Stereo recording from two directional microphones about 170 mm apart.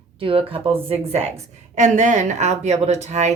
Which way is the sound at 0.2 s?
30° right (ahead or behind).